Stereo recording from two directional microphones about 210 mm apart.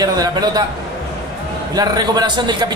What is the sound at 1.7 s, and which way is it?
Speech, 20° right (ahead or behind).